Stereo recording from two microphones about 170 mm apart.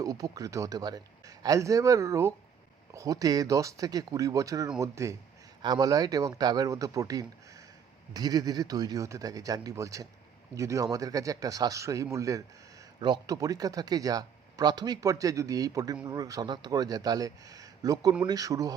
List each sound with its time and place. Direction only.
0.0 s speech: 20° right (ahead or behind)